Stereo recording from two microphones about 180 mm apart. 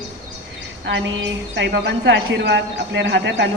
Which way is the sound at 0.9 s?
85° right.